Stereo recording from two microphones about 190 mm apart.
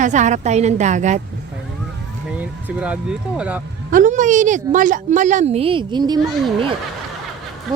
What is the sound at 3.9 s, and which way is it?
A woman's voice, 40° right (ahead or behind).